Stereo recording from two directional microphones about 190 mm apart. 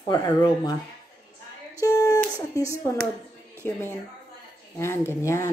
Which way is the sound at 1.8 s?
15° left (ahead or behind).